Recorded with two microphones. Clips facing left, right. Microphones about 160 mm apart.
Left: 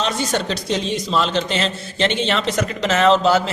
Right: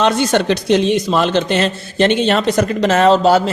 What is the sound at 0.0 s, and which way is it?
A man's voice, 65° right (ahead or behind).